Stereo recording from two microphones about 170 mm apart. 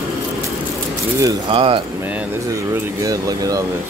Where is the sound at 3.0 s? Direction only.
20° right (ahead or behind).